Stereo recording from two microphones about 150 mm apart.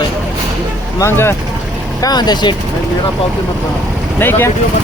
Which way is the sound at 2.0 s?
25° left (ahead or behind).